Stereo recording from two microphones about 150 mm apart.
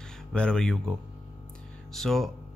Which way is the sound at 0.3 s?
5° left (ahead or behind).